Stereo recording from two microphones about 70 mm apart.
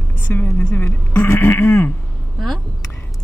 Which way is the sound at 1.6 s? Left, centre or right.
Left.